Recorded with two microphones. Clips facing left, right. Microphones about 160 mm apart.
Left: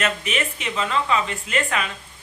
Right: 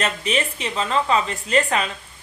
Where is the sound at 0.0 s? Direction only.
35° right (ahead or behind).